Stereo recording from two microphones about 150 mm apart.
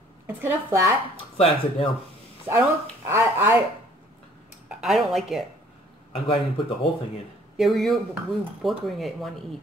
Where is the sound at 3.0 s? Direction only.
15° right (ahead or behind).